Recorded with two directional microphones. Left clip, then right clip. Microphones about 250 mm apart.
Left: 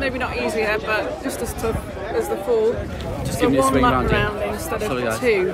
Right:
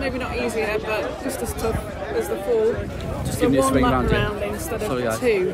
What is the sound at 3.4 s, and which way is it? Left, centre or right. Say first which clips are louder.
Speech: left 2 dB; centre.